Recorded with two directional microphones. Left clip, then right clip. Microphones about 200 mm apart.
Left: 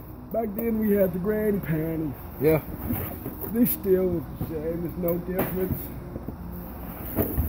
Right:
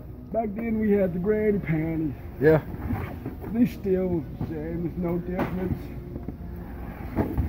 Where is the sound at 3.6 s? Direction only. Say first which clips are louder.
Even; 15° left (ahead or behind).